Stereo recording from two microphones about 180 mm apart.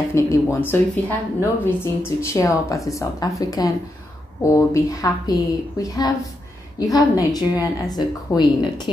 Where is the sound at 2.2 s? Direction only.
15° left (ahead or behind).